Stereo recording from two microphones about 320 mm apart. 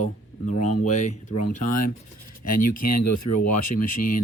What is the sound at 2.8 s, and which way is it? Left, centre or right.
Speech, left.